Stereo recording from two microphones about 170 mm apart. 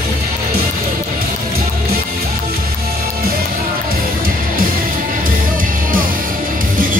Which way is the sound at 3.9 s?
60° right (ahead or behind).